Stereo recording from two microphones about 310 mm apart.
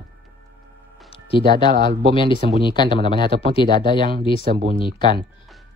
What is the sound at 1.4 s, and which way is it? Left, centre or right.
Speech, centre.